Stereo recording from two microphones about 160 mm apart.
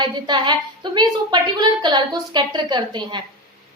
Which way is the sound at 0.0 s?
30° right (ahead or behind).